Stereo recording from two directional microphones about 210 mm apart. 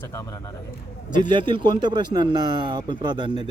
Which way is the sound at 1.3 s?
20° right (ahead or behind).